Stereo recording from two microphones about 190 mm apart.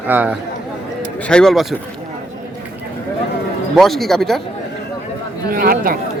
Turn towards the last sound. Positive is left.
turn(degrees=-50)  # may be behind; listen again after turning